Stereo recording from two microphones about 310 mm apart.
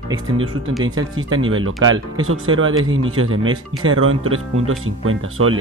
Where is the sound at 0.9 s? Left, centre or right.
Right.